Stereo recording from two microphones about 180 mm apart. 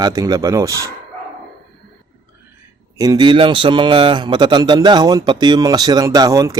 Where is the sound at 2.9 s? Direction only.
20° right (ahead or behind).